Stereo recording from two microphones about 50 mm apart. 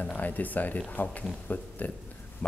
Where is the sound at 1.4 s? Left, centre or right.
Left.